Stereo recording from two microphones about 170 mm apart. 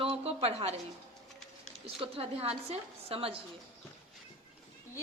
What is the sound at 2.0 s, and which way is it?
A woman's voice, 35° right (ahead or behind).